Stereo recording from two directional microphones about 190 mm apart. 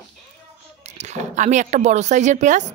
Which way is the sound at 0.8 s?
35° right (ahead or behind).